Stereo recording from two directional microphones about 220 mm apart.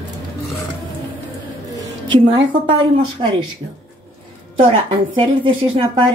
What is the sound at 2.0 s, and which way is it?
Speech, 20° right (ahead or behind).